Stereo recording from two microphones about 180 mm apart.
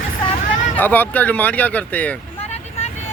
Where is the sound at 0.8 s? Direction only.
10° left (ahead or behind).